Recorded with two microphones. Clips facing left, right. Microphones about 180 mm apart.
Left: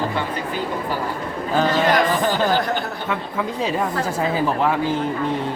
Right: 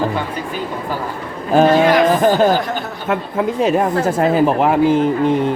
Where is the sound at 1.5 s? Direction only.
50° right (ahead or behind).